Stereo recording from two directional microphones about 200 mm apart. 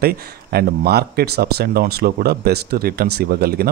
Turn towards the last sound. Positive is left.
turn(degrees=-50)  # may be behind; listen again after turning